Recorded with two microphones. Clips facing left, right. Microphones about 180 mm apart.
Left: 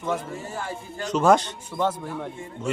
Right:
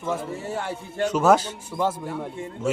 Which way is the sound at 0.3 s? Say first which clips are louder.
Right 3 dB; 70° right (ahead or behind).